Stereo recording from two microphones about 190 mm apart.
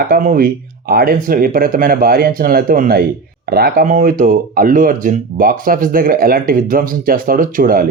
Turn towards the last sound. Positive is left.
turn(degrees=-50)  # may be behind; listen again after turning